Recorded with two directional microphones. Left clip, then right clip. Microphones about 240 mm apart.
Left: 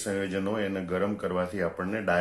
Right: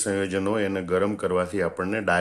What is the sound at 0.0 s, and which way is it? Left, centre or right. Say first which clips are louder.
Speech: right 5 dB; right.